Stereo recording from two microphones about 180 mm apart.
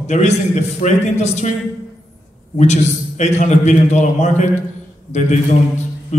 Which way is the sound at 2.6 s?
40° left (ahead or behind).